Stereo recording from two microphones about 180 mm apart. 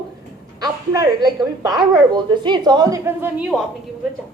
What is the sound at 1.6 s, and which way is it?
A woman's voice, 25° right (ahead or behind).